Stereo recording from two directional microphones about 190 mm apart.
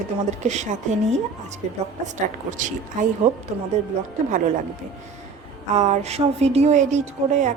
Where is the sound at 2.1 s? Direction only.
40° right (ahead or behind).